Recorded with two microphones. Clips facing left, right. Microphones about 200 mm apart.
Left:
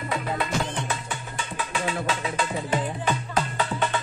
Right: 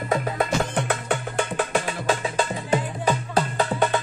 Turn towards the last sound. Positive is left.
turn(degrees=-40)  # may be behind; listen again after turning